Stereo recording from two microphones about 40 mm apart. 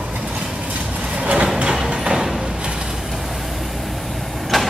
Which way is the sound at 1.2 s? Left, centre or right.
Right.